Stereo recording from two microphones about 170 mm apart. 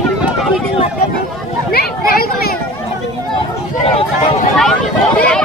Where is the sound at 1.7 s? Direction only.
65° left (ahead or behind).